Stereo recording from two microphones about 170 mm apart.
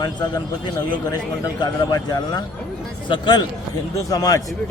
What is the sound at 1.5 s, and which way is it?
Speech, 25° left (ahead or behind).